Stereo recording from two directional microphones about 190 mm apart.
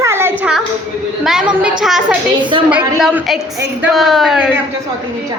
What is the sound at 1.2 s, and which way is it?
A woman's voice, 5° right (ahead or behind).